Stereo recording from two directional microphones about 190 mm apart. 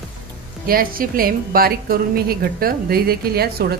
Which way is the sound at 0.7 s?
50° right (ahead or behind).